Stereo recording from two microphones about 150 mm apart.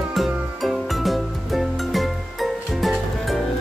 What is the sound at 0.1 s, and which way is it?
Music, centre (ahead or behind).